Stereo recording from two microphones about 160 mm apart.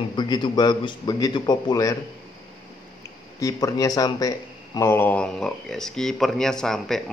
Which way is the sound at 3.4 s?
20° left (ahead or behind).